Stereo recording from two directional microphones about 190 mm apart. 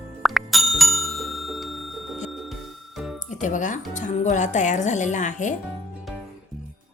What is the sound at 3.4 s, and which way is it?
Speech, 40° left (ahead or behind).